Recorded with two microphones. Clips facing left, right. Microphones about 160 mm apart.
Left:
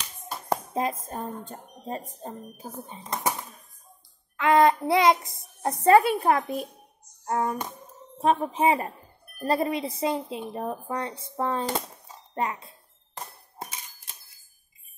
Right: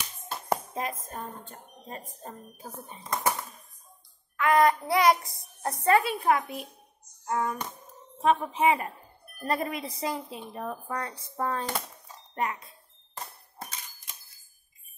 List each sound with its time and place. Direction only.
0.7 s speech: 30° left (ahead or behind)
4.4 s child singing: 25° left (ahead or behind)
5.6 s a woman's voice: 25° left (ahead or behind)